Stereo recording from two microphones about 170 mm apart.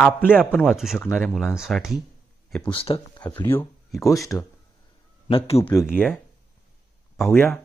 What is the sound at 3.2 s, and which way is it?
Speech, 15° left (ahead or behind).